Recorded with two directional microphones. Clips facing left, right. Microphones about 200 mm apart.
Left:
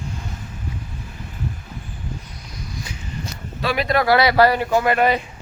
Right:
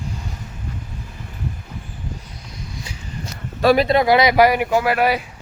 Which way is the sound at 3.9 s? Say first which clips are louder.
Right 2 dB; 20° right (ahead or behind).